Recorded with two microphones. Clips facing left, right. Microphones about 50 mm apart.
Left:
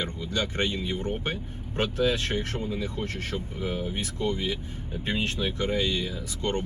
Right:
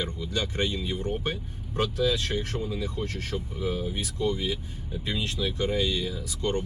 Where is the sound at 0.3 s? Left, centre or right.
Left.